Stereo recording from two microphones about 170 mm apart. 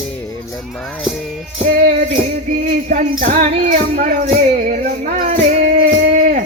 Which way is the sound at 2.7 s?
50° right (ahead or behind).